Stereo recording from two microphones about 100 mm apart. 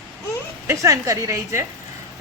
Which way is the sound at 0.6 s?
30° right (ahead or behind).